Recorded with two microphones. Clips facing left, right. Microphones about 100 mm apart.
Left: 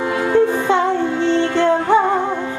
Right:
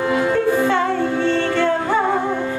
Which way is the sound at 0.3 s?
20° left (ahead or behind).